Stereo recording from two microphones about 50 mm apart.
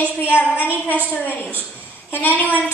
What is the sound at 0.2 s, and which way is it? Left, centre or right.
A woman's voice, left.